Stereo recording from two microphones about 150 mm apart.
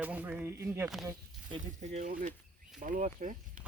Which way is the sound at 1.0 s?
30° right (ahead or behind).